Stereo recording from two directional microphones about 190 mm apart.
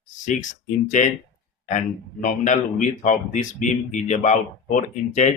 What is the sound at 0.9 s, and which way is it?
Speech, 40° left (ahead or behind).